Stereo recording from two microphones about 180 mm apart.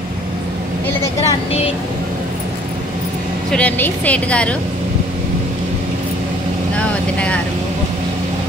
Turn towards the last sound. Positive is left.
turn(degrees=5)  # may be behind; listen again after turning